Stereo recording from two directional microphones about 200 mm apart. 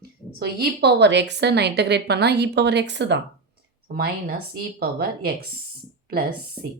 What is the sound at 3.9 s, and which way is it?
Speech, 50° right (ahead or behind).